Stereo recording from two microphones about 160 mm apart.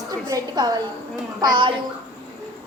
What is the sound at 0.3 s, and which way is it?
A child's voice, 25° right (ahead or behind).